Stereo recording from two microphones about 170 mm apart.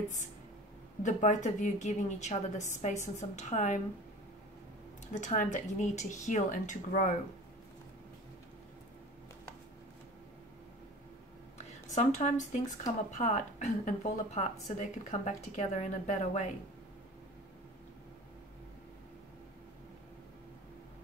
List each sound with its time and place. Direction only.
1.0 s a woman's voice: 45° left (ahead or behind)
5.0 s a woman's voice: 45° left (ahead or behind)
11.5 s a sound: 40° left (ahead or behind)
13.1 s a woman's voice: 45° left (ahead or behind)